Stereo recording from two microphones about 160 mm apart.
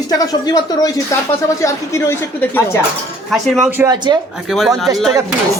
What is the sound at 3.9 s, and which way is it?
Speech, 30° right (ahead or behind).